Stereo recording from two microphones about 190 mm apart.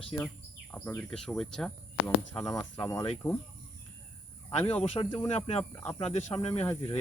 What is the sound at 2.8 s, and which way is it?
Speech, 15° left (ahead or behind).